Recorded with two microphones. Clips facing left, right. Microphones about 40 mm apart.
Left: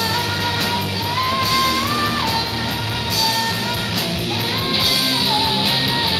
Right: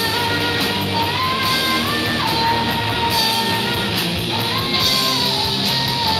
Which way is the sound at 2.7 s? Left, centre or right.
Right.